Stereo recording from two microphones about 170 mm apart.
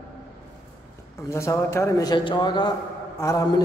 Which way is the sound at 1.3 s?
15° left (ahead or behind).